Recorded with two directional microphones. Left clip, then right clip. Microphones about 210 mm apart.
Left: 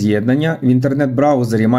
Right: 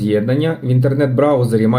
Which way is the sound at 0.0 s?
45° left (ahead or behind).